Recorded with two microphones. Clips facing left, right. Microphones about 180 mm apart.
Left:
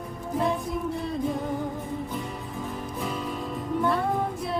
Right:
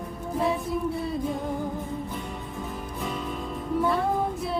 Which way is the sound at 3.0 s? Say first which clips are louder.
Even; centre (ahead or behind).